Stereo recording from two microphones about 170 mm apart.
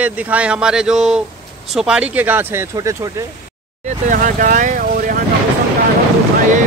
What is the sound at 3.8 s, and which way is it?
Speech, 45° right (ahead or behind).